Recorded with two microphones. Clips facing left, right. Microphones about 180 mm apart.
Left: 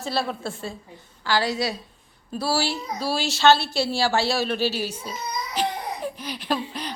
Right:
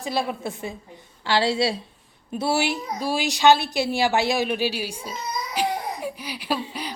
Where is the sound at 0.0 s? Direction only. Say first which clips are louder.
Right 1 dB; 15° right (ahead or behind).